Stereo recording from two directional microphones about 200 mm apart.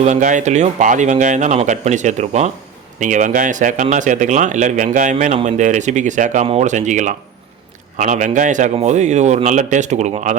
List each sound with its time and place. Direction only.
0.0 s speech: 40° right (ahead or behind)